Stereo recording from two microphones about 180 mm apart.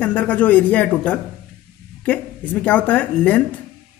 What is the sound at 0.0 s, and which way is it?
Speech, 10° left (ahead or behind).